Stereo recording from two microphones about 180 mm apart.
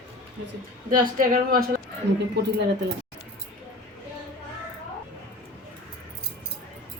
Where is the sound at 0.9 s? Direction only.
55° right (ahead or behind).